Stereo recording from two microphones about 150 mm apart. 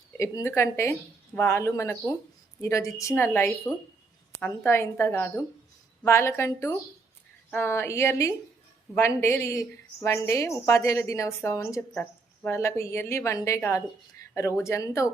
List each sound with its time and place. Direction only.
0.2 s a woman's voice: 20° left (ahead or behind)